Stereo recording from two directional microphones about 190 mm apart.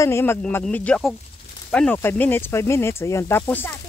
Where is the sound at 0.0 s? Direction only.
15° left (ahead or behind).